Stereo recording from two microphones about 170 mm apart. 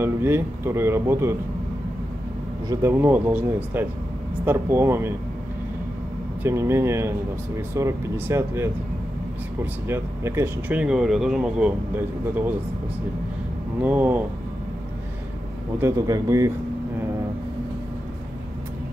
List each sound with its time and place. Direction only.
0.0 s a man's voice: 15° right (ahead or behind)
2.7 s a man's voice: 15° right (ahead or behind)
6.4 s a man's voice: 15° right (ahead or behind)
9.8 s speech: 15° right (ahead or behind)
13.7 s a man's voice: 10° right (ahead or behind)
15.8 s a man's voice: 15° right (ahead or behind)